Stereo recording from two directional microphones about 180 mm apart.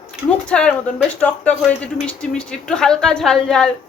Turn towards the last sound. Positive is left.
turn(degrees=5)  # may be behind; listen again after turning